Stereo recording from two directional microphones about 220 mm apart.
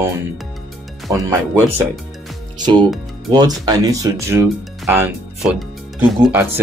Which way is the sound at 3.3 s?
15° right (ahead or behind).